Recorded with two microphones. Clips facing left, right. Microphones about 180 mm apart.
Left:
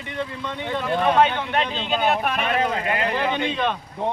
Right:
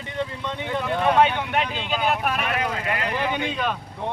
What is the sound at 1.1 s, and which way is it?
Speech, 10° right (ahead or behind).